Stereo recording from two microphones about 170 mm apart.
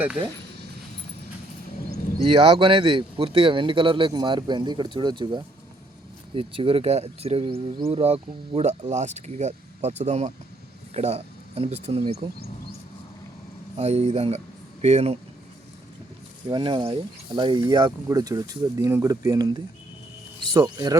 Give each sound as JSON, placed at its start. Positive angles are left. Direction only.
{"t": 2.2, "sound": "speech", "side_deg": -35}
{"t": 13.7, "sound": "speech", "side_deg": -40}
{"t": 16.5, "sound": "speech", "side_deg": -25}